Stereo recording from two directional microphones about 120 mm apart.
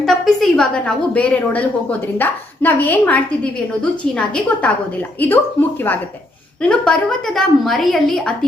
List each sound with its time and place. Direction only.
0.0 s a woman's voice: 5° left (ahead or behind)
5.2 s a woman's voice: 15° left (ahead or behind)